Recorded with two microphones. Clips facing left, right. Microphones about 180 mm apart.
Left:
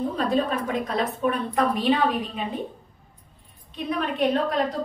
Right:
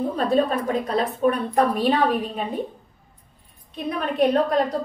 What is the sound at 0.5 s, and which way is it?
A woman's voice, 40° right (ahead or behind).